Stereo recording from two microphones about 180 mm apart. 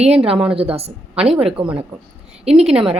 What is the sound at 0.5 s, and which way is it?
Speech, 35° right (ahead or behind).